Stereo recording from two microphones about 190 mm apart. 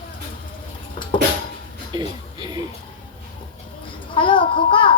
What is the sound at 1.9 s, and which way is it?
Music, 20° right (ahead or behind).